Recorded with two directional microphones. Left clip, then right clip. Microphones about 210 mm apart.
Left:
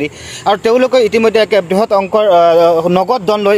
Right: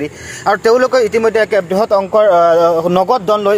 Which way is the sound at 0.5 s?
25° left (ahead or behind).